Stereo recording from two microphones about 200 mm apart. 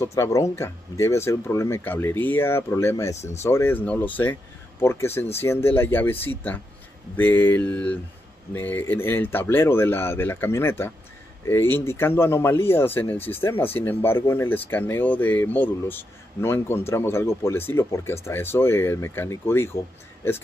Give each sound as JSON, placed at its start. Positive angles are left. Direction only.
{"t": 0.0, "sound": "speech", "side_deg": 15}